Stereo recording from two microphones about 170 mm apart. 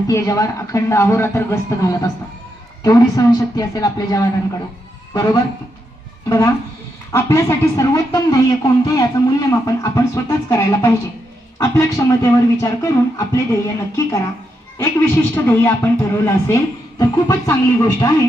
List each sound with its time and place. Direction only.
0.1 s speech: 20° left (ahead or behind)